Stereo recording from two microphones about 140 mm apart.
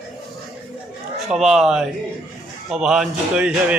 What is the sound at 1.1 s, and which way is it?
A man's voice, centre (ahead or behind).